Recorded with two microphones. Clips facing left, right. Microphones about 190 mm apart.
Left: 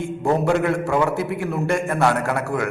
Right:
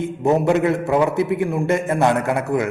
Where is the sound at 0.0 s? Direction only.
20° right (ahead or behind).